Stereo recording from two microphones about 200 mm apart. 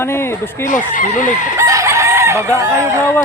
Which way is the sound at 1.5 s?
15° right (ahead or behind).